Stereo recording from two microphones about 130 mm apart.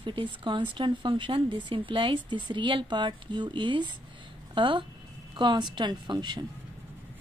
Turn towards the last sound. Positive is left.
turn(degrees=-35)  # may be behind; listen again after turning